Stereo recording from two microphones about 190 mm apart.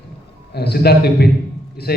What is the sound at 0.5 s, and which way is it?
A man's voice, 60° left (ahead or behind).